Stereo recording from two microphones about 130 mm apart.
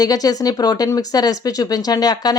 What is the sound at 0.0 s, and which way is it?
Speech, 30° left (ahead or behind).